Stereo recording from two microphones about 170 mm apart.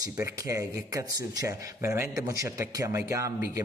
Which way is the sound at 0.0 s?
15° right (ahead or behind).